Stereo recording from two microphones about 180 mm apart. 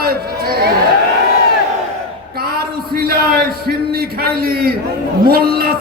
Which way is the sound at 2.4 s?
55° right (ahead or behind).